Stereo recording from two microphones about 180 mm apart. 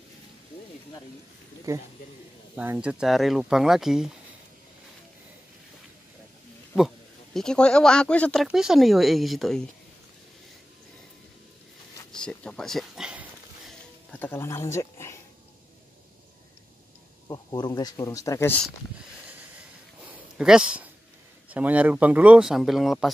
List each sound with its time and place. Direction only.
1.7 s speech: 15° right (ahead or behind)
7.3 s speech: 5° left (ahead or behind)
12.1 s a sound: 5° left (ahead or behind)
14.1 s speech: 10° left (ahead or behind)
17.3 s speech: 25° left (ahead or behind)
20.1 s a sound: 5° right (ahead or behind)
21.5 s speech: 10° right (ahead or behind)